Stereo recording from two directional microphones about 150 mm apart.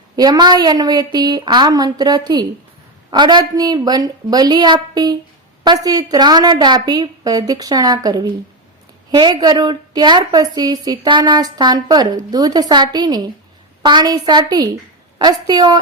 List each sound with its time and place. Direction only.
0.2 s a woman's voice: 30° right (ahead or behind)